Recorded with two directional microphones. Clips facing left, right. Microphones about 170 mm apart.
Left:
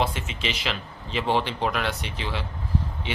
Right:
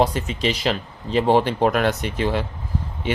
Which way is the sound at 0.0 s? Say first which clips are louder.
Right 7 dB; 40° right (ahead or behind).